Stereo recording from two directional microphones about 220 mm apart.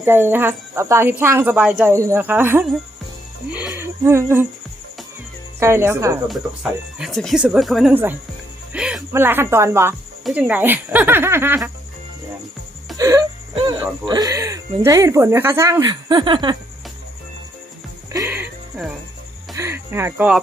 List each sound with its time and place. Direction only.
0.0 s speech: 10° right (ahead or behind)
5.5 s speech: 10° right (ahead or behind)
6.2 s speech: centre (ahead or behind)
13.0 s wail: 15° right (ahead or behind)
14.0 s speech: 20° right (ahead or behind)
18.1 s music: 10° right (ahead or behind)
19.5 s speech: 10° right (ahead or behind)